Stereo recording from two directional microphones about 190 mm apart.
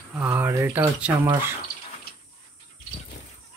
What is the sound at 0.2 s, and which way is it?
Speech, 15° right (ahead or behind).